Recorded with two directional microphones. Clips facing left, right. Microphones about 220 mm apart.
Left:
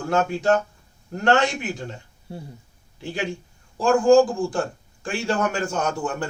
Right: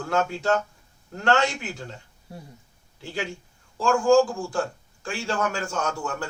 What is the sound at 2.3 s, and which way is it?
Speech, 25° left (ahead or behind).